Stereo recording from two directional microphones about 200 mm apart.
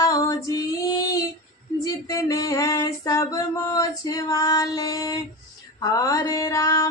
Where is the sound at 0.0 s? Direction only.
15° left (ahead or behind).